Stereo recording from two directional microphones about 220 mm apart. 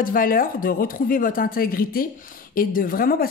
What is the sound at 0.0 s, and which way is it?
Speech, 40° left (ahead or behind).